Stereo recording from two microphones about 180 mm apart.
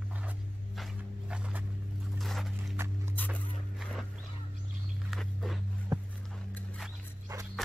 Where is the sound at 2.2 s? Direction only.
Centre (ahead or behind).